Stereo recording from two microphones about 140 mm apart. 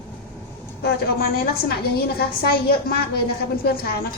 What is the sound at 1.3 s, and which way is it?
Speech, 90° left.